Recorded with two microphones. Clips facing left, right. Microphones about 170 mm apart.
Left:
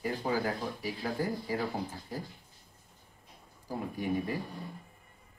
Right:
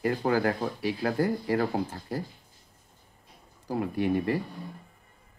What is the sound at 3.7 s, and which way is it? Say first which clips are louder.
Speech: right 6 dB; 75° right (ahead or behind).